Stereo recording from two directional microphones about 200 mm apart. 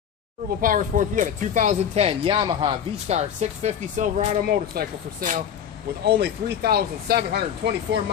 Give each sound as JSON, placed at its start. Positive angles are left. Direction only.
{"t": 0.6, "sound": "speech", "side_deg": -40}